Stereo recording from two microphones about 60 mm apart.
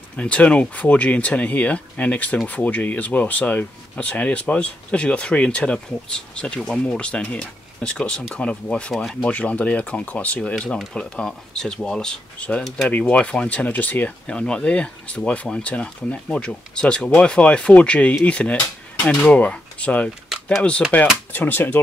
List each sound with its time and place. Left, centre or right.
0.1 s speech: left
12.6 s speech: centre
13.0 s speech: centre
20.3 s typing: centre
20.9 s speech: left